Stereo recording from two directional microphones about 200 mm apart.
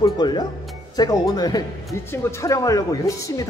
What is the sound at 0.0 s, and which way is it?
Speech, 20° left (ahead or behind).